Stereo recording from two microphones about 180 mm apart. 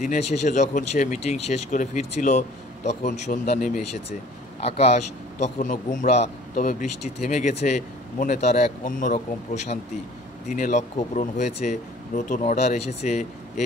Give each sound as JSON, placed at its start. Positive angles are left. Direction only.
{"t": 0.0, "sound": "speech", "side_deg": 40}
{"t": 4.6, "sound": "speech", "side_deg": 35}